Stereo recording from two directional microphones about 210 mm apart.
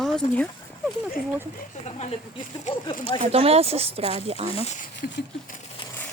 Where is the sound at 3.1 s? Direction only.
30° right (ahead or behind).